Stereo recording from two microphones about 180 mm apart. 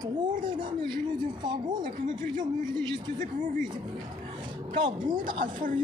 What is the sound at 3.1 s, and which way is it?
Speech, 45° right (ahead or behind).